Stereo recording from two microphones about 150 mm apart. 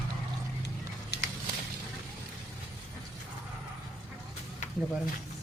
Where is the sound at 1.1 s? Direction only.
90° left.